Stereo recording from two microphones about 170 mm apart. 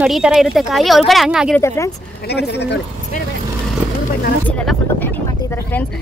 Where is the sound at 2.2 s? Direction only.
75° left (ahead or behind).